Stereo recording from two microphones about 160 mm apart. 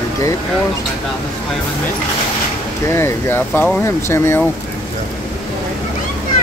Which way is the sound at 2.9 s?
15° left (ahead or behind).